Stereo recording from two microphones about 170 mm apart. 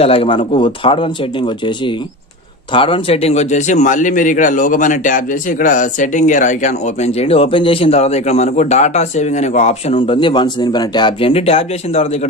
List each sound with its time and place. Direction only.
0.0 s a man's voice: 35° left (ahead or behind)
2.7 s a man's voice: 30° left (ahead or behind)